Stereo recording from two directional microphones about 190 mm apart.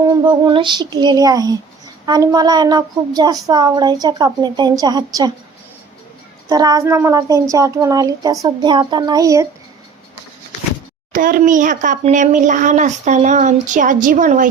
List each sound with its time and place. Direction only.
0.0 s a woman's voice: 20° right (ahead or behind)
6.5 s a woman's voice: 20° right (ahead or behind)
11.1 s speech: 45° right (ahead or behind)